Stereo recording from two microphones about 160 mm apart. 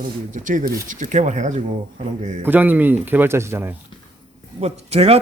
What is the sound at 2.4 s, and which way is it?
Speech, 10° right (ahead or behind).